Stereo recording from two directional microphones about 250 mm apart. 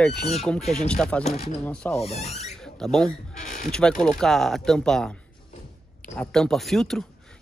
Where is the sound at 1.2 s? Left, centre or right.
Left.